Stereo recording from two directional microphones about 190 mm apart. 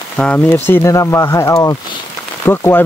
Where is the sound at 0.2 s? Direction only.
10° left (ahead or behind).